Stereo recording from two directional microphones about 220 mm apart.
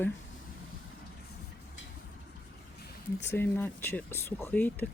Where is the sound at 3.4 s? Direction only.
10° left (ahead or behind).